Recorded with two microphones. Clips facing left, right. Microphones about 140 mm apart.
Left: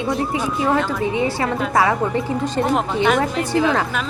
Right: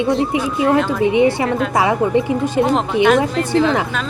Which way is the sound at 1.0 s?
20° right (ahead or behind).